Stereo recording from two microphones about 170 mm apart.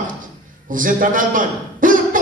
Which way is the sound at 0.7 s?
50° right (ahead or behind).